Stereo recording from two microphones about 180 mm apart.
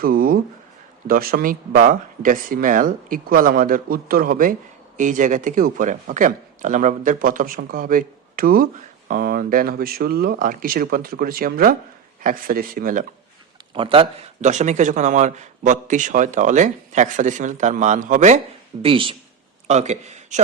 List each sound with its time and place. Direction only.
0.0 s speech: 55° right (ahead or behind)
13.7 s speech: 30° right (ahead or behind)
18.8 s speech: 30° right (ahead or behind)
19.6 s a man's voice: 40° right (ahead or behind)